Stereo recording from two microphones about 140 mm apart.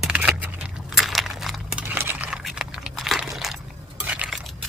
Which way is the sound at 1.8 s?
15° right (ahead or behind).